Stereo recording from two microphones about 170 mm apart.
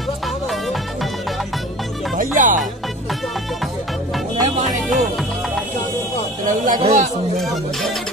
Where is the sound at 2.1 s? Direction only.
50° right (ahead or behind).